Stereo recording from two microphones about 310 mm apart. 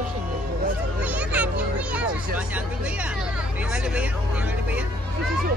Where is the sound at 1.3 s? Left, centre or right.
Centre.